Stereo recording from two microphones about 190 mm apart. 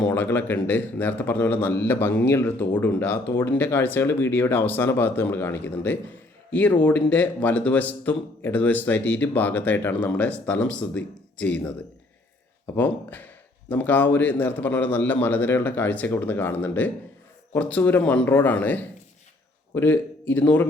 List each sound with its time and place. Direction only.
0.0 s speech: 10° left (ahead or behind)
12.7 s a man's voice: 10° left (ahead or behind)